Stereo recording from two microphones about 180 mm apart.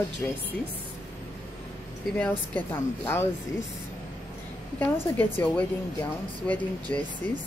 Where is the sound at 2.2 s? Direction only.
10° left (ahead or behind).